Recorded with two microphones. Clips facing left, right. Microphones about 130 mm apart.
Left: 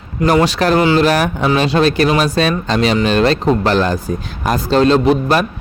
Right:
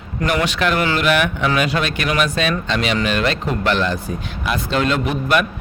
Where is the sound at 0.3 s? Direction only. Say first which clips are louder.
Left 6 dB; 35° left (ahead or behind).